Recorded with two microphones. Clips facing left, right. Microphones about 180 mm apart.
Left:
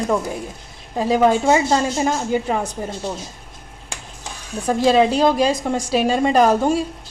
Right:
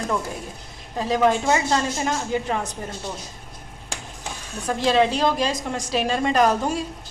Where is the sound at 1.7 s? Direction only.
30° left (ahead or behind).